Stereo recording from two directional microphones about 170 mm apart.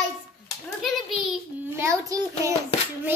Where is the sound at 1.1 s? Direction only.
10° right (ahead or behind).